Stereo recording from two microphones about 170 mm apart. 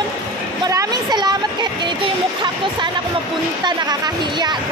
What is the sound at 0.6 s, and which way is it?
Speech, 20° right (ahead or behind).